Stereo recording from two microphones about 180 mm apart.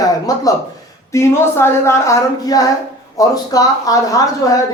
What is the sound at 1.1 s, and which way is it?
Speech, 15° left (ahead or behind).